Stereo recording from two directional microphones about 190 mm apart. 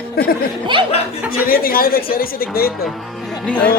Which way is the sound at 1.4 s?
50° left (ahead or behind).